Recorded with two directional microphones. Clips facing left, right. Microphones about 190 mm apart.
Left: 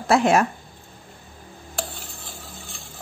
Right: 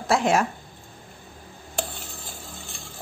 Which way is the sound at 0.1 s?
60° left (ahead or behind).